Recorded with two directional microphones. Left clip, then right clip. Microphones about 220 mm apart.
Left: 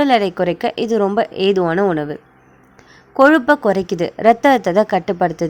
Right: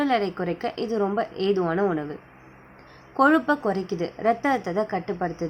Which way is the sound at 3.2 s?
30° left (ahead or behind).